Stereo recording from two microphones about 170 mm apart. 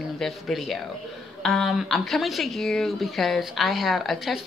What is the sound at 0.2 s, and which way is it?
Speech, centre (ahead or behind).